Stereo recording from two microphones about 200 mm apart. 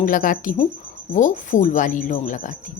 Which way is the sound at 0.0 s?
40° left (ahead or behind).